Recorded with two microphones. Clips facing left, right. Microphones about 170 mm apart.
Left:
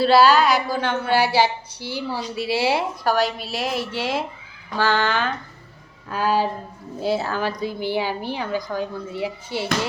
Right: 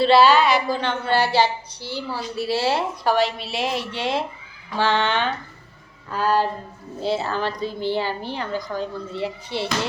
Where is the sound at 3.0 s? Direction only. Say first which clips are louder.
Right 1 dB; centre (ahead or behind).